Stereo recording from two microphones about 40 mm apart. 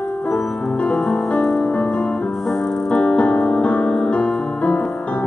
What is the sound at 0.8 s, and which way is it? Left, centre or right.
Music, left.